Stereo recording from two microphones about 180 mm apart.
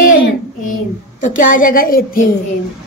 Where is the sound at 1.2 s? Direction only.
45° left (ahead or behind).